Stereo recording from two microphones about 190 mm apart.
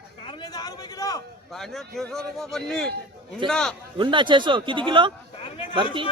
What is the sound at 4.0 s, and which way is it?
A man's voice, 25° right (ahead or behind).